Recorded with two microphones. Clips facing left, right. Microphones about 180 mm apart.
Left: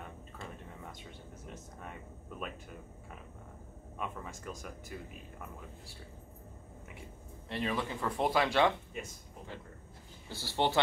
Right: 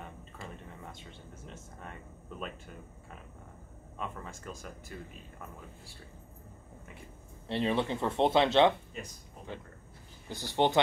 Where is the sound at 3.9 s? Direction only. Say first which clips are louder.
Even; 10° left (ahead or behind).